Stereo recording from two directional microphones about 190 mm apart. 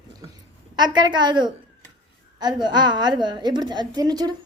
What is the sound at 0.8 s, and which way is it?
A woman's voice, 25° right (ahead or behind).